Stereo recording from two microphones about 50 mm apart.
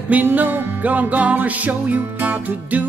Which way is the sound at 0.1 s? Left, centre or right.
Right.